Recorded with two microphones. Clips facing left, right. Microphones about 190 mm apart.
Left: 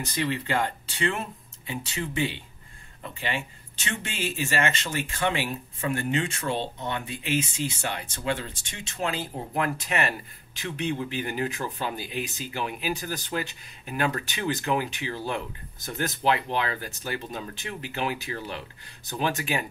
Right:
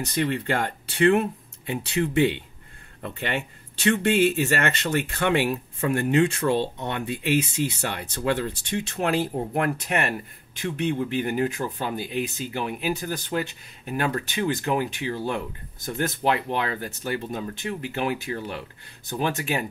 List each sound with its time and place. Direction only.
0.0 s speech: 60° right (ahead or behind)
16.5 s speech: 50° right (ahead or behind)